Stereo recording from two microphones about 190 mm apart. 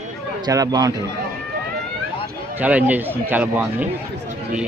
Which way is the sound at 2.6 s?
10° right (ahead or behind).